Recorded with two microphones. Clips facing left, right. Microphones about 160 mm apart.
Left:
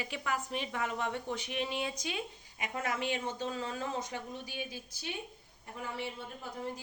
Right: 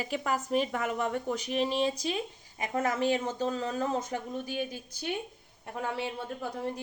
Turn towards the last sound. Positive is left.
turn(degrees=-70)  # may be behind; listen again after turning